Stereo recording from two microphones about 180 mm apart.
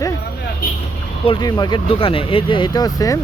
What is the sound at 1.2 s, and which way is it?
Speech, 25° left (ahead or behind).